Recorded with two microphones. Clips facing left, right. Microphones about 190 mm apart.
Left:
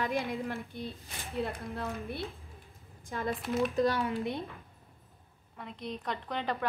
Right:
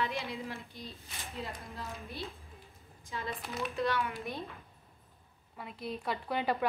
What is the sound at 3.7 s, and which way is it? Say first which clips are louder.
Speech: even; 40° left (ahead or behind).